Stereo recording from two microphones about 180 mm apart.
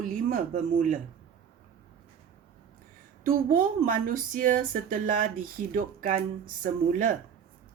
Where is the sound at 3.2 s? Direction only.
50° right (ahead or behind).